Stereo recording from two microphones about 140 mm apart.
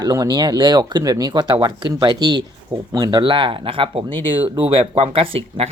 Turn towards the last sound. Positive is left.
turn(degrees=-40)  # may be behind; listen again after turning